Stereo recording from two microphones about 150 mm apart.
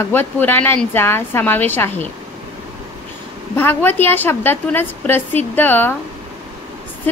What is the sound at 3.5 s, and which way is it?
A woman's voice, 15° left (ahead or behind).